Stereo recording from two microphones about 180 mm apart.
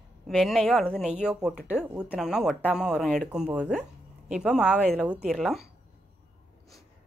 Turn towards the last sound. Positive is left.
turn(degrees=0)  # may be behind; listen again after turning